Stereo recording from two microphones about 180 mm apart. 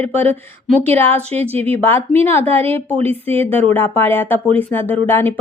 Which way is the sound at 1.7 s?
10° left (ahead or behind).